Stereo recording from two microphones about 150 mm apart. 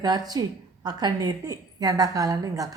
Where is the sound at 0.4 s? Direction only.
25° right (ahead or behind).